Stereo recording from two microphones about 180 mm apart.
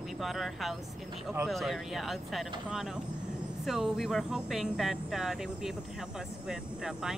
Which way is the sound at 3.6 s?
Centre (ahead or behind).